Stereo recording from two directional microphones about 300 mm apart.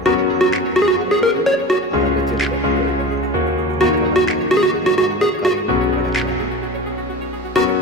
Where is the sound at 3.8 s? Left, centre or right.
Centre.